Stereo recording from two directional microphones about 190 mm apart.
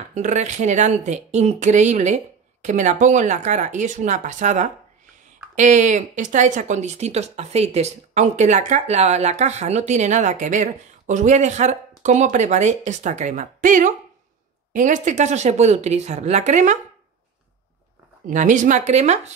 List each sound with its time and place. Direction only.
0.1 s speech: 40° right (ahead or behind)
18.2 s speech: 40° right (ahead or behind)